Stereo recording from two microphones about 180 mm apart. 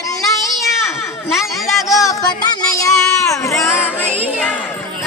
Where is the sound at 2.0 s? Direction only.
20° left (ahead or behind).